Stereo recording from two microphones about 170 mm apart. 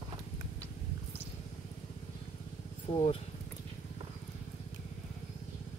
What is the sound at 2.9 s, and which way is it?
Speech, 35° left (ahead or behind).